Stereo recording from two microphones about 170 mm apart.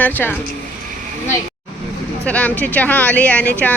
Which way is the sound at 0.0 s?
10° left (ahead or behind).